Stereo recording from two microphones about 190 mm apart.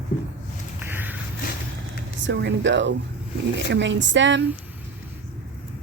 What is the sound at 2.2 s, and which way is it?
Speech, 70° right (ahead or behind).